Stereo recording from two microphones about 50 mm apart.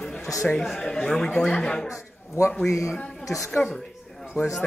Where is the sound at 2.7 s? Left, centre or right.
Left.